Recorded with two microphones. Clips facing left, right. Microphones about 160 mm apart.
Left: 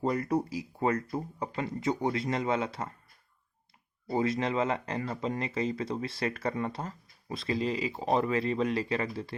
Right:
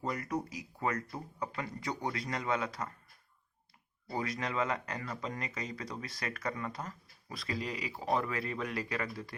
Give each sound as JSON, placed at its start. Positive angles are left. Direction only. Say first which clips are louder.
{"t": 0.0, "sound": "speech", "louder": "left 7 dB", "side_deg": 30}
{"t": 4.1, "sound": "speech", "louder": "left 7 dB", "side_deg": 25}